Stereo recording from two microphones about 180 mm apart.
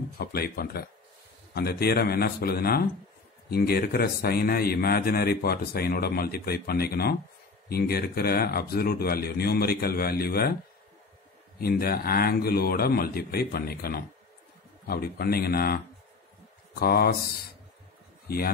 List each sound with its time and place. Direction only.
0.2 s a man's voice: 55° left (ahead or behind)
11.6 s a man's voice: 55° left (ahead or behind)